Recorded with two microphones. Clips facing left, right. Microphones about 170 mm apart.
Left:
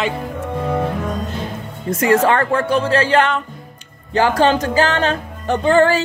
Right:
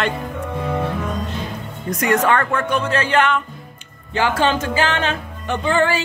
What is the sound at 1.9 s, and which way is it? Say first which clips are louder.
Speech: left 3 dB; 30° left (ahead or behind).